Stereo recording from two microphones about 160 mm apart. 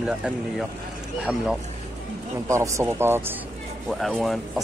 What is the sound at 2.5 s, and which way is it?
Speech, 20° right (ahead or behind).